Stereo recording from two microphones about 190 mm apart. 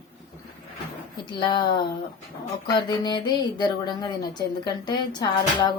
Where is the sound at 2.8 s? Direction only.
20° left (ahead or behind).